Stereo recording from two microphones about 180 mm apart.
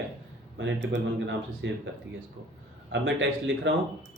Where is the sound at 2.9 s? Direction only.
90° right.